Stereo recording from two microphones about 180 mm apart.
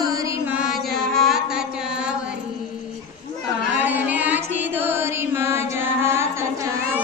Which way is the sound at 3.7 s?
10° right (ahead or behind).